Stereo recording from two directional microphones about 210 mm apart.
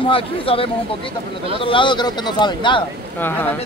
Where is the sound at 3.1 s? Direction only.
10° left (ahead or behind).